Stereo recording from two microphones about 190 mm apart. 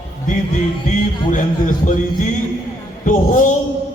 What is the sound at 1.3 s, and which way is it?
Speech, 45° left (ahead or behind).